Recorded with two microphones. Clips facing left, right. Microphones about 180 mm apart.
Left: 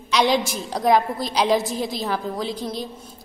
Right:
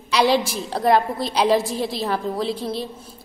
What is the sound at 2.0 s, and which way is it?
Speech, centre (ahead or behind).